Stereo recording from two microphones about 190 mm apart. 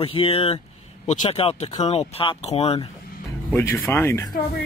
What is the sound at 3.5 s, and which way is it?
Speech, 10° left (ahead or behind).